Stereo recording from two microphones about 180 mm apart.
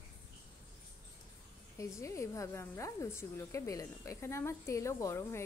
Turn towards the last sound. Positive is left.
turn(degrees=15)  # may be behind; listen again after turning